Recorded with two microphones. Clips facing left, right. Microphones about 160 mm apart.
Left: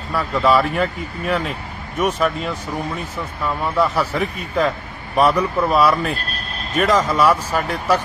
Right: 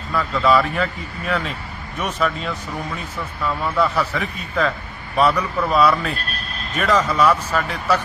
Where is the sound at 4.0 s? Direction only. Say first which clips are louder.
Left 2 dB; 30° left (ahead or behind).